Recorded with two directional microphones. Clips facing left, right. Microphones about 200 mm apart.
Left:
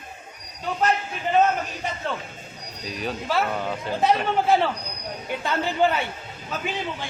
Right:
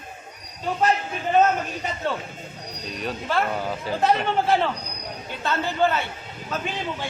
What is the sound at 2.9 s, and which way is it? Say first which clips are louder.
Speech: even; centre (ahead or behind).